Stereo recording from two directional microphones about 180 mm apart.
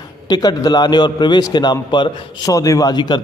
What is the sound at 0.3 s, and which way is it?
A man's voice, 20° left (ahead or behind).